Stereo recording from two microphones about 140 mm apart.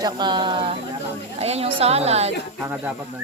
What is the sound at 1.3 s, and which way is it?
Speech, 50° right (ahead or behind).